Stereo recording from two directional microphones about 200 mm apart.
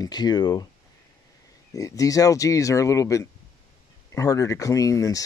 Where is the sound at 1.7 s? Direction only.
15° left (ahead or behind).